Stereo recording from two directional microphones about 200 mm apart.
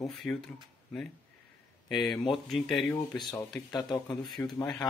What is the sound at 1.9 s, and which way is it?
Speech, centre (ahead or behind).